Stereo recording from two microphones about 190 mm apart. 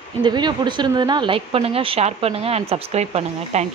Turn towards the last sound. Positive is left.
turn(degrees=-35)  # may be behind; listen again after turning